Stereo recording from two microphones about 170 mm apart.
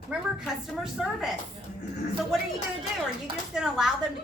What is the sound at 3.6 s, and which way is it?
Speech, 5° right (ahead or behind).